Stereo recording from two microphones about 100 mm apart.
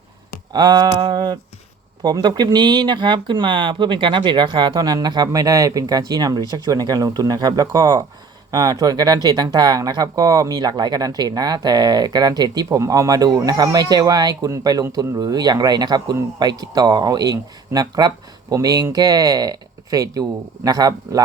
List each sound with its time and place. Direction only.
0.5 s speech: 45° right (ahead or behind)